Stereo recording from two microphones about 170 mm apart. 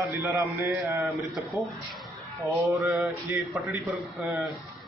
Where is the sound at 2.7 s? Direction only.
15° right (ahead or behind).